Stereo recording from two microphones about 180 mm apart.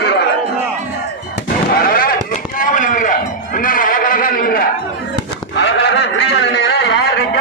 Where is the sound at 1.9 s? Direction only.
55° left (ahead or behind).